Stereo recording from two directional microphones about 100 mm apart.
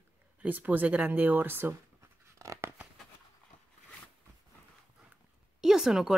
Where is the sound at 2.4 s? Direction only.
30° right (ahead or behind).